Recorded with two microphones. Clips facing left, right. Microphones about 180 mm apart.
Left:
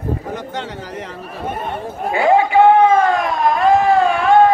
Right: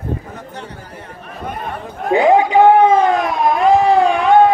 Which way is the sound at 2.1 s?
20° right (ahead or behind).